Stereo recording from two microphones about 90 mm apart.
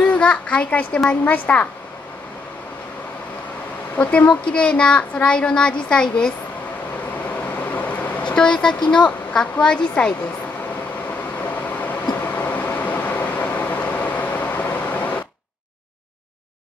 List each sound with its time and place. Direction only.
0.0 s a child's voice: 15° left (ahead or behind)
4.0 s a child's voice: 15° left (ahead or behind)
7.7 s vehicle: 15° left (ahead or behind)
8.9 s a child's voice: 10° left (ahead or behind)
11.4 s vehicle: 20° left (ahead or behind)